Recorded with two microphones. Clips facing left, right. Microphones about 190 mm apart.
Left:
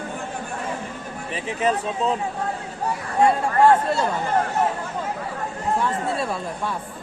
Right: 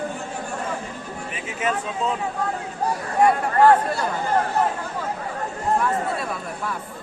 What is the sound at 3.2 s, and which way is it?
Speech, 25° left (ahead or behind).